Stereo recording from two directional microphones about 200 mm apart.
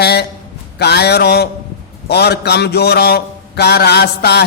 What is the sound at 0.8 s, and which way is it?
A man's voice, 55° left (ahead or behind).